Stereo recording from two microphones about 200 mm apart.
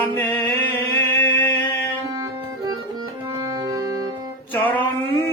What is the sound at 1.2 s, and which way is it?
Mantra, 10° left (ahead or behind).